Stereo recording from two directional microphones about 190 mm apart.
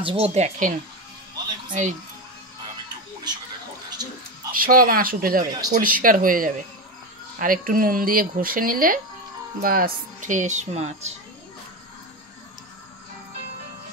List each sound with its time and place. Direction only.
0.0 s speech: 30° right (ahead or behind)
4.5 s speech: 50° right (ahead or behind)